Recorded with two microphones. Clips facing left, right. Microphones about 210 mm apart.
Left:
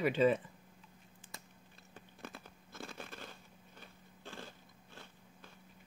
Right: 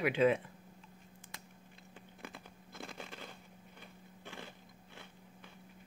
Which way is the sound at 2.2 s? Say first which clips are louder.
Left 1 dB; 15° right (ahead or behind).